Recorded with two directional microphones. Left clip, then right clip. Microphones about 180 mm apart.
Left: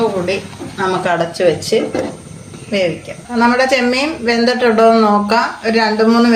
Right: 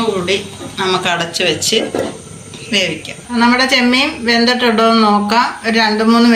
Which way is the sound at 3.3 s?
50° left (ahead or behind).